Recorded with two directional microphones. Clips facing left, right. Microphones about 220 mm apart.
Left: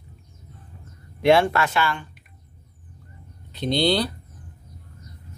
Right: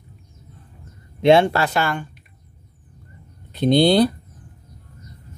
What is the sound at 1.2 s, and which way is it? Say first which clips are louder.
Speech: right 3 dB; 25° right (ahead or behind).